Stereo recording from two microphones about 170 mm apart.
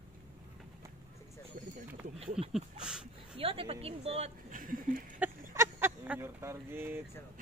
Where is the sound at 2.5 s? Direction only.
5° right (ahead or behind).